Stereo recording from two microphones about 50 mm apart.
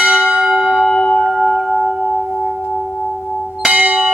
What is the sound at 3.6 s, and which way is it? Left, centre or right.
Church bell, right.